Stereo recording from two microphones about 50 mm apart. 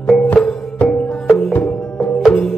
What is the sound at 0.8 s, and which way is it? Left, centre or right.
Music, left.